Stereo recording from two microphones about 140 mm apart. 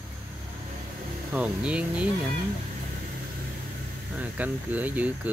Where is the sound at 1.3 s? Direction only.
5° right (ahead or behind).